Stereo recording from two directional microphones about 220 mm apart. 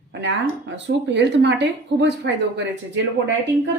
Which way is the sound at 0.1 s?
55° right (ahead or behind).